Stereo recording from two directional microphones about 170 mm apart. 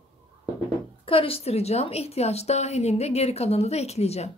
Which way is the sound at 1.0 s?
35° left (ahead or behind).